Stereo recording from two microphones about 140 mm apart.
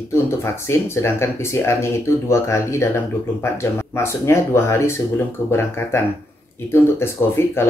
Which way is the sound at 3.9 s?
20° left (ahead or behind).